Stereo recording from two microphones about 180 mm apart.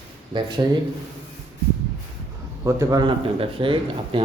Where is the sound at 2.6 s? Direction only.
20° right (ahead or behind).